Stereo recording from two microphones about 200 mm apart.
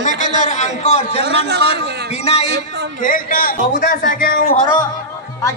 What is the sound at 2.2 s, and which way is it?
Speech, 30° left (ahead or behind).